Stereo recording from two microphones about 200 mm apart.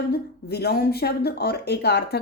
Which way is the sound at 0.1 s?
55° left (ahead or behind).